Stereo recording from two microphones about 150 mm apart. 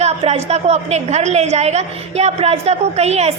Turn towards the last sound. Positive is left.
turn(degrees=-45)  # may be behind; listen again after turning